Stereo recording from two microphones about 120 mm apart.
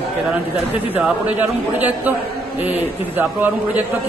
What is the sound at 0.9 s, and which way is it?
Speech, 10° right (ahead or behind).